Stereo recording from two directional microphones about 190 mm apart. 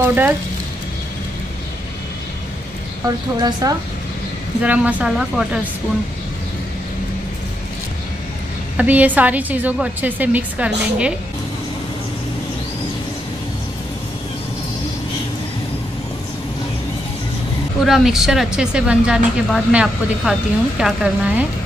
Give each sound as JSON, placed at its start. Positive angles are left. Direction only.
{"t": 0.0, "sound": "a woman's voice", "side_deg": -10}
{"t": 3.3, "sound": "speech", "side_deg": -20}
{"t": 4.6, "sound": "speech", "side_deg": -10}
{"t": 8.7, "sound": "a woman's voice", "side_deg": -10}
{"t": 17.8, "sound": "speech", "side_deg": 0}